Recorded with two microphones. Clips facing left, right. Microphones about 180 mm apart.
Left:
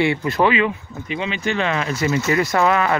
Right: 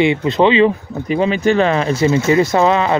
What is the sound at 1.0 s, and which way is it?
Speech, 40° right (ahead or behind).